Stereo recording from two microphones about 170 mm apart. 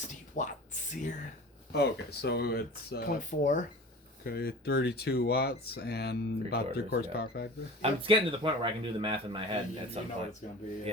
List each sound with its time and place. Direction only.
0.3 s a sound: 45° left (ahead or behind)
1.7 s speech: 70° left (ahead or behind); by 3.6 s 50° left (ahead or behind)
4.2 s speech: 65° left (ahead or behind)
7.8 s speech: 30° right (ahead or behind)